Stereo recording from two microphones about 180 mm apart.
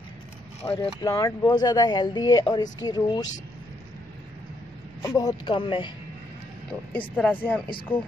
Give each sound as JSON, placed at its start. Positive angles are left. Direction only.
{"t": 0.7, "sound": "speech", "side_deg": 20}
{"t": 5.0, "sound": "speech", "side_deg": 20}
{"t": 7.2, "sound": "speech", "side_deg": 10}
{"t": 7.6, "sound": "speech", "side_deg": 30}